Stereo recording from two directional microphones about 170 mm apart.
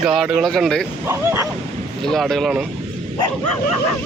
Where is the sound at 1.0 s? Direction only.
15° right (ahead or behind).